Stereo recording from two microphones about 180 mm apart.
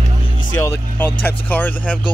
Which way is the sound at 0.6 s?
10° left (ahead or behind).